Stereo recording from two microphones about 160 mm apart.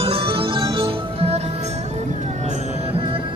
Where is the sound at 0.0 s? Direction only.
35° right (ahead or behind).